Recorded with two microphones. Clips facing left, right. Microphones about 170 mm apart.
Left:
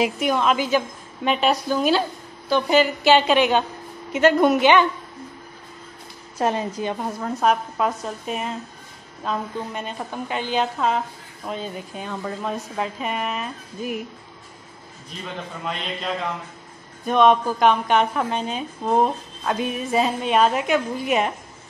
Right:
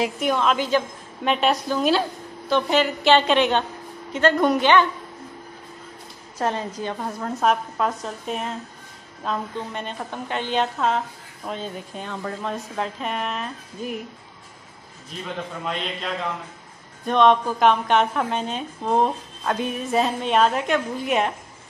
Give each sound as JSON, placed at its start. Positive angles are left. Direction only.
{"t": 0.2, "sound": "a woman's voice", "side_deg": 5}
{"t": 6.3, "sound": "a woman's voice", "side_deg": 15}
{"t": 7.2, "sound": "a woman's voice", "side_deg": 0}
{"t": 17.0, "sound": "a woman's voice", "side_deg": 5}